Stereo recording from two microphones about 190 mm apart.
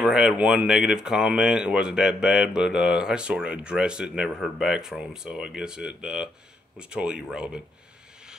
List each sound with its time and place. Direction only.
0.0 s speech: 5° right (ahead or behind)